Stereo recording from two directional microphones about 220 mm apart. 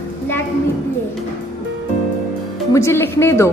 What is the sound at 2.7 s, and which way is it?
Speech, 10° left (ahead or behind).